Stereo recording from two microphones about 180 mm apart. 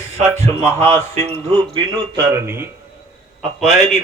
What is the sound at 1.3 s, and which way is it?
Speech, 30° right (ahead or behind).